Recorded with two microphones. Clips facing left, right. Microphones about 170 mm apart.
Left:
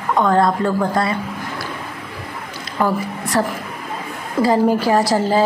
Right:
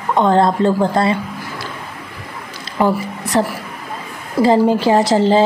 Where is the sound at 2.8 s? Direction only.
20° right (ahead or behind).